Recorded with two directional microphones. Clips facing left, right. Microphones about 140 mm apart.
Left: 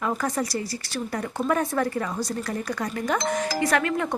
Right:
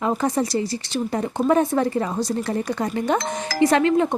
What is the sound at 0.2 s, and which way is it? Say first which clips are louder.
A woman's voice: right 5 dB; 25° right (ahead or behind).